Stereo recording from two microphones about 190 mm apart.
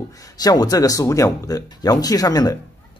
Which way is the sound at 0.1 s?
20° left (ahead or behind).